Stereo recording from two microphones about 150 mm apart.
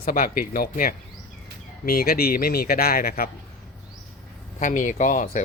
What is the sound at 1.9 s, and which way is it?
Speech, 85° left.